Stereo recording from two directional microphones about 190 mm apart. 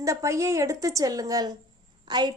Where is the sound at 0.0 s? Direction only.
15° right (ahead or behind).